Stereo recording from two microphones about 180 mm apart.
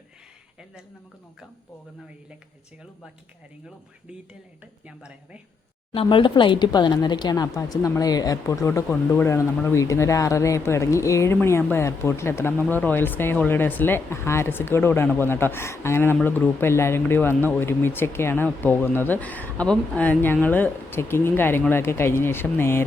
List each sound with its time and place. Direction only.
4.9 s speech: 5° right (ahead or behind)
5.9 s speech: 30° left (ahead or behind); by 22.8 s 15° left (ahead or behind)